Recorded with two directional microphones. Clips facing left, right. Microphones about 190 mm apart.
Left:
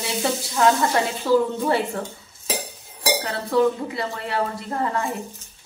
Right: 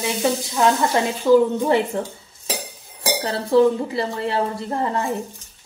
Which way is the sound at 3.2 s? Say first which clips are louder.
Right 5 dB; 30° right (ahead or behind).